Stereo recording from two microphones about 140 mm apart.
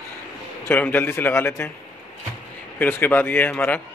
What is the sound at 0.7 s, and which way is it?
A man's voice, 15° left (ahead or behind).